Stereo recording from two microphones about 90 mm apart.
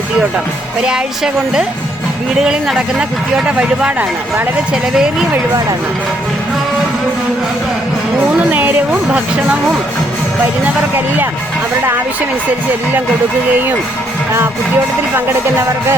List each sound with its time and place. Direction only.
0.3 s speech: 10° right (ahead or behind)
8.4 s speech: 20° right (ahead or behind)
15.1 s music: 25° right (ahead or behind)